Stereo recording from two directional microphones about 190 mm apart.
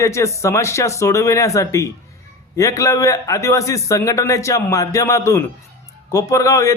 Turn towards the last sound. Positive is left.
turn(degrees=15)  # may be behind; listen again after turning